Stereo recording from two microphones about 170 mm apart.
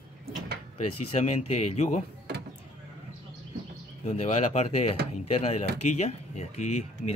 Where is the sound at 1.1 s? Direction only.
40° left (ahead or behind).